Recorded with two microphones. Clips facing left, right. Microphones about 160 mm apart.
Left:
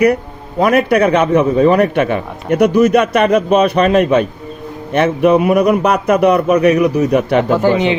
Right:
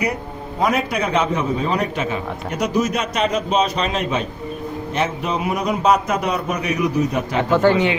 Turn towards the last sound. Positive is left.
turn(degrees=20)  # may be behind; listen again after turning